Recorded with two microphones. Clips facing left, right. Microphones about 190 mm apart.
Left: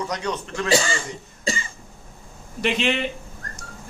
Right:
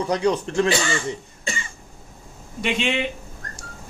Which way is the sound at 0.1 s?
30° right (ahead or behind).